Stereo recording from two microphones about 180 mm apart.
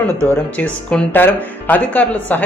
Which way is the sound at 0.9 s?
10° left (ahead or behind).